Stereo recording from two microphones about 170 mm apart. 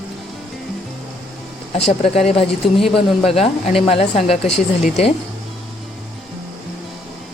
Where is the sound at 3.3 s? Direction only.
35° left (ahead or behind).